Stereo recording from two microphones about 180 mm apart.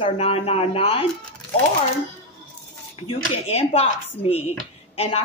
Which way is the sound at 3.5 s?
35° left (ahead or behind).